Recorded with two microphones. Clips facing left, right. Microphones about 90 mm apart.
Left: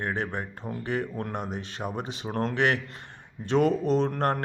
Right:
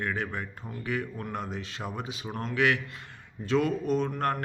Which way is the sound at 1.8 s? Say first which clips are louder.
Left 5 dB; 10° left (ahead or behind).